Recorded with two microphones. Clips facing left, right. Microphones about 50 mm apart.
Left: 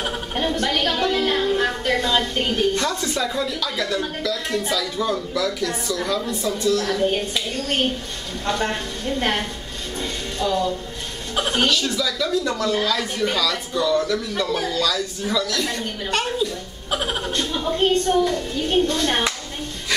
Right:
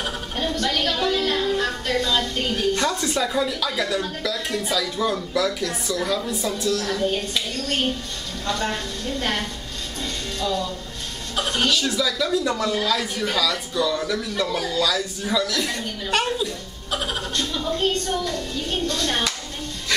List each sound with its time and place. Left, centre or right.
0.0 s a sound: left
1.1 s music: left
2.7 s a woman's voice: centre
7.1 s a child's voice: left
10.0 s music: centre
11.3 s a woman's voice: centre
11.7 s speech: centre
14.8 s speech: centre
16.9 s a child's voice: centre